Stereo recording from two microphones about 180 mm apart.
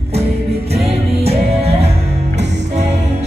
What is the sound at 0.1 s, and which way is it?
Music, 35° right (ahead or behind).